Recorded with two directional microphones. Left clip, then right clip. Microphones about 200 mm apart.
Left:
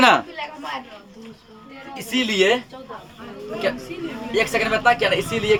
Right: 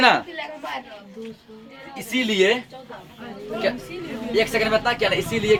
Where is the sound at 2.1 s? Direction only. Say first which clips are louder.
Left 1 dB; 25° left (ahead or behind).